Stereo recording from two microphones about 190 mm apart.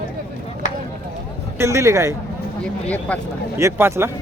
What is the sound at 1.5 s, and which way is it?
Speech, 15° right (ahead or behind).